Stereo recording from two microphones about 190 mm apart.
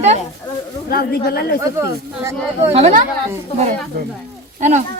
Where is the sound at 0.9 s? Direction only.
55° left (ahead or behind).